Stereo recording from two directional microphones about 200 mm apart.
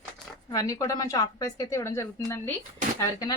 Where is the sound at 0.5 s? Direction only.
15° left (ahead or behind).